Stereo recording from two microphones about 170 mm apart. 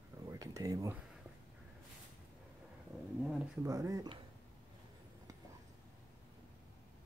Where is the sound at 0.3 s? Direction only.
20° right (ahead or behind).